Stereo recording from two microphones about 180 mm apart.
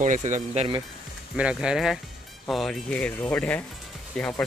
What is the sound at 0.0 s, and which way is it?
Speech, 45° right (ahead or behind).